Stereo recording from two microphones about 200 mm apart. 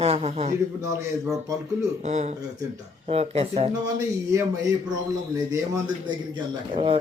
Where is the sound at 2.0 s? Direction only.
35° right (ahead or behind).